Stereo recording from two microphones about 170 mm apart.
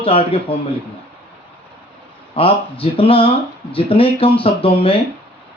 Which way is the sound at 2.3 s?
35° left (ahead or behind).